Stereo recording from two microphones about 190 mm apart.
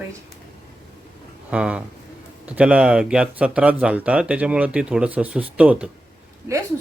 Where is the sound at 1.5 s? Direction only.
5° right (ahead or behind).